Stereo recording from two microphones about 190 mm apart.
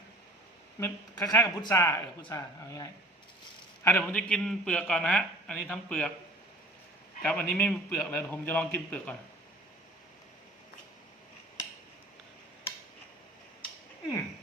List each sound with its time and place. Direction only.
0.8 s a man's voice: 15° left (ahead or behind)
7.2 s speech: 5° left (ahead or behind)